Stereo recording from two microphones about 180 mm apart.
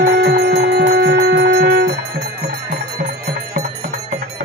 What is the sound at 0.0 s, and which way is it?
Music, 60° right (ahead or behind).